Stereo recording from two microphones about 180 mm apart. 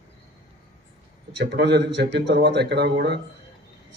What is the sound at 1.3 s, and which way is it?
Speech, 70° right (ahead or behind).